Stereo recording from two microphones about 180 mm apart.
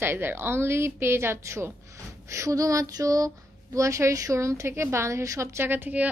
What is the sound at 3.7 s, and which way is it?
A woman's voice, 15° right (ahead or behind).